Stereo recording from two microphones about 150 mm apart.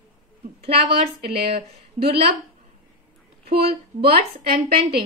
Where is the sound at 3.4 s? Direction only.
40° right (ahead or behind).